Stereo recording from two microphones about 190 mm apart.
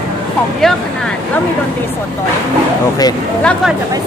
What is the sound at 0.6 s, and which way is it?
Speech, centre (ahead or behind).